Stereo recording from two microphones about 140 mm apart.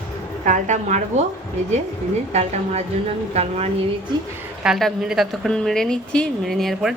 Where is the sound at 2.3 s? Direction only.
50° right (ahead or behind).